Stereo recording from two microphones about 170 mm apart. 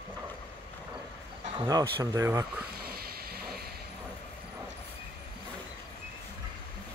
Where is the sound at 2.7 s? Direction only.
65° right (ahead or behind).